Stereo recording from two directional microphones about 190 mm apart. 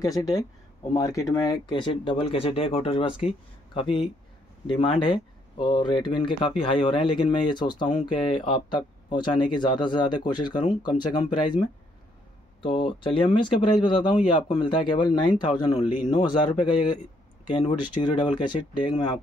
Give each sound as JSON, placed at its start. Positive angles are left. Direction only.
{"t": 0.0, "sound": "speech", "side_deg": 20}
{"t": 4.6, "sound": "speech", "side_deg": 25}
{"t": 12.6, "sound": "speech", "side_deg": 25}